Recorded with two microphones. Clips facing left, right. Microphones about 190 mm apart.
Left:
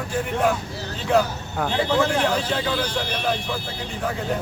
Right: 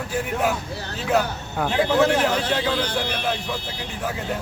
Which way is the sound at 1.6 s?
5° right (ahead or behind).